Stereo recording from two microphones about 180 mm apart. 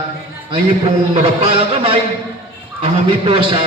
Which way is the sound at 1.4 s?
30° right (ahead or behind).